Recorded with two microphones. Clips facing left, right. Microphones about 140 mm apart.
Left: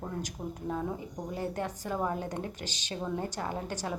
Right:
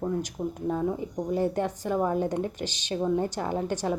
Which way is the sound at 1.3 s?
25° right (ahead or behind).